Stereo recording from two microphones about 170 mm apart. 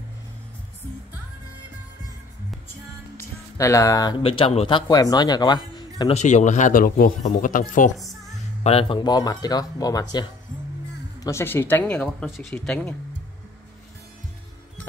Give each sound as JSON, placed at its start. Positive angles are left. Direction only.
{"t": 3.2, "sound": "speech", "side_deg": 20}
{"t": 6.1, "sound": "speech", "side_deg": 45}
{"t": 8.6, "sound": "speech", "side_deg": 35}
{"t": 11.2, "sound": "speech", "side_deg": 15}